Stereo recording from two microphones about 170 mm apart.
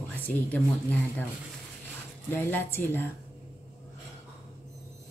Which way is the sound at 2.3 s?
10° left (ahead or behind).